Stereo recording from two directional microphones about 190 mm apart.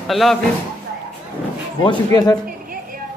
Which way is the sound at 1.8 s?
20° left (ahead or behind).